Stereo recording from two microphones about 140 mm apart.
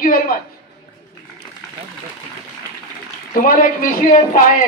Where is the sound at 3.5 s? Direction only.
85° left.